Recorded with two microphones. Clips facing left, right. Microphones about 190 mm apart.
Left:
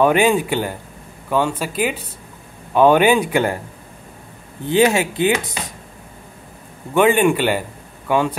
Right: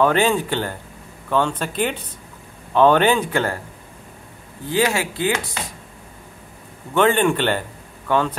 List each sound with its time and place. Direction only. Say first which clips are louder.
0.0 s speech: left 3 dB; 15° left (ahead or behind)
4.6 s speech: left 5 dB; 20° left (ahead or behind)
6.9 s speech: left 3 dB; 10° left (ahead or behind)